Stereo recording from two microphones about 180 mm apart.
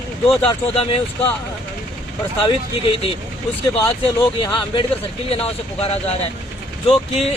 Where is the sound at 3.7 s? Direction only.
20° left (ahead or behind).